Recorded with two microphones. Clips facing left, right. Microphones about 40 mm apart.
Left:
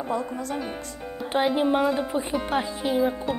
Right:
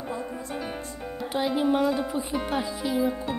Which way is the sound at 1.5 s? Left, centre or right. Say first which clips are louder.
Right 1 dB; centre.